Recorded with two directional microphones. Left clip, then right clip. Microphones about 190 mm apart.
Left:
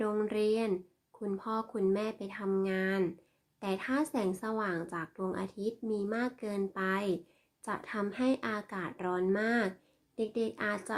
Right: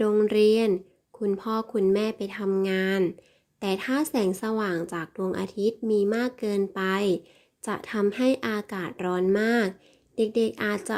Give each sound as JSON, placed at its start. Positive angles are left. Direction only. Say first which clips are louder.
{"t": 0.0, "sound": "speech", "louder": "right 11 dB", "side_deg": -40}